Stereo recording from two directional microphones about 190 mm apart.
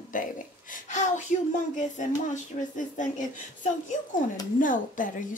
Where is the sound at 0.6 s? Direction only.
40° left (ahead or behind).